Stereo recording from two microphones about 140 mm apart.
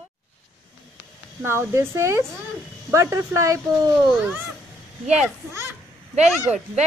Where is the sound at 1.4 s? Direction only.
15° right (ahead or behind).